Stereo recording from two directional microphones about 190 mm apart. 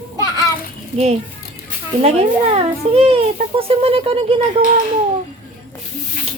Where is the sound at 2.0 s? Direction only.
30° right (ahead or behind).